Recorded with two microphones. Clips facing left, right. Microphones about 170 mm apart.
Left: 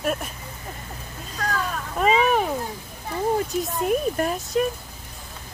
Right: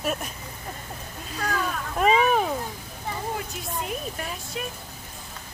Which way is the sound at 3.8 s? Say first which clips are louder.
Left 14 dB; 45° left (ahead or behind).